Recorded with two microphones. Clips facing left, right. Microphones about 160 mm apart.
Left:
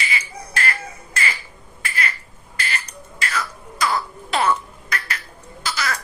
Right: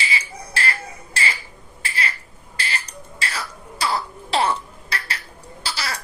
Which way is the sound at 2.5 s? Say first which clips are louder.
Left 1 dB; 30° right (ahead or behind).